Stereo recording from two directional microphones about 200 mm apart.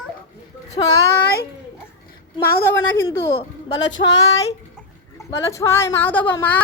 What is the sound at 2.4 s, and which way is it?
Speech, 10° left (ahead or behind).